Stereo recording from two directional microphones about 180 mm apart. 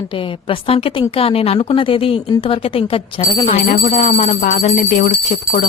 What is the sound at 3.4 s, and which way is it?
A woman's voice, 45° left (ahead or behind).